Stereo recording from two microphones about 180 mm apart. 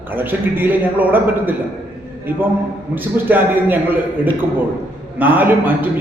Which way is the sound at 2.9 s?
10° right (ahead or behind).